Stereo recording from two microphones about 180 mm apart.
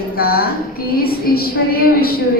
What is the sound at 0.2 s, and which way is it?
Speech, 60° left (ahead or behind).